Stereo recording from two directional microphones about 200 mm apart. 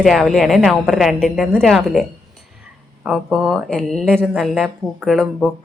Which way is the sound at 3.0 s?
Centre (ahead or behind).